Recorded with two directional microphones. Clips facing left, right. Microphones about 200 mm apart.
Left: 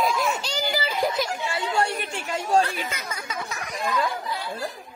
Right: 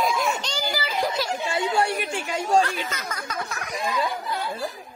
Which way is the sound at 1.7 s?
Centre (ahead or behind).